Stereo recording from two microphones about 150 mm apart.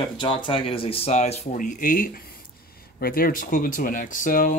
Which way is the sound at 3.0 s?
80° left.